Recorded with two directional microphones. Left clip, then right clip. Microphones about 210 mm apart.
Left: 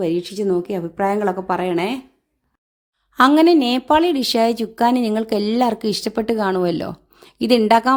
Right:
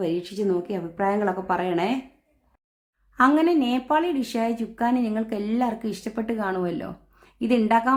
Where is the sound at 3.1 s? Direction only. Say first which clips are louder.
Left 7 dB; 45° left (ahead or behind).